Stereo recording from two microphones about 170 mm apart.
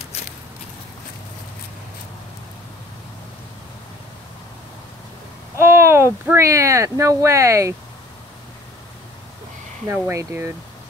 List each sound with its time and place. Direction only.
5.6 s speech: 15° right (ahead or behind)
9.8 s speech: 10° right (ahead or behind)